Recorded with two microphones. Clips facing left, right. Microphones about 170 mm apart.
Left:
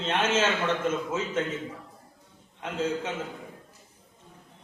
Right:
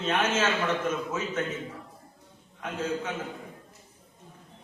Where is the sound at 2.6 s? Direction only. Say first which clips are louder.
Left 2 dB; 25° left (ahead or behind).